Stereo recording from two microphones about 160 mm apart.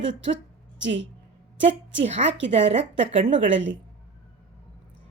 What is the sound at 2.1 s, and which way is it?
A woman's voice, 40° right (ahead or behind).